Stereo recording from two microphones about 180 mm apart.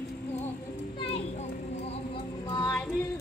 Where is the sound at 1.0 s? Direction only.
30° left (ahead or behind).